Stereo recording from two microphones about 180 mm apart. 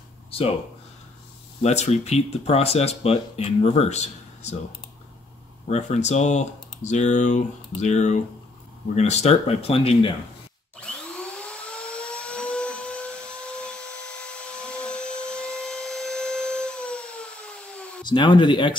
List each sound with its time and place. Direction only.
0.3 s speech: 30° left (ahead or behind)
1.6 s speech: 40° left (ahead or behind)
5.7 s speech: 40° left (ahead or behind)
10.8 s a sound: 5° left (ahead or behind)
18.0 s speech: 25° left (ahead or behind)